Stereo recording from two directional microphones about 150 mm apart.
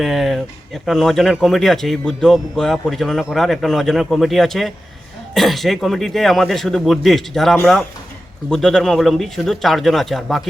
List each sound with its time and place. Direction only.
0.0 s speech: centre (ahead or behind)